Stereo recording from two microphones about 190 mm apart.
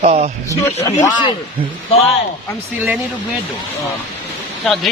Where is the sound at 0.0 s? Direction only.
35° right (ahead or behind).